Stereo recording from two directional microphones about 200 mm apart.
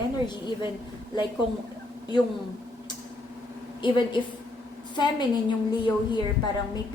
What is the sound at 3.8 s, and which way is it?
A woman's voice, 25° left (ahead or behind).